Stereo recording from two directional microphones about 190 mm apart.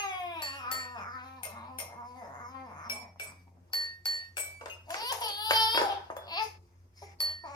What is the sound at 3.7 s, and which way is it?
Laughter, 25° left (ahead or behind).